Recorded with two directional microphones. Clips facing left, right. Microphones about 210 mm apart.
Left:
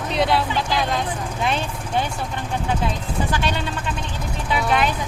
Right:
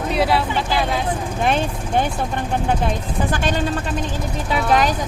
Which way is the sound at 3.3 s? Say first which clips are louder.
Right 4 dB; 45° right (ahead or behind).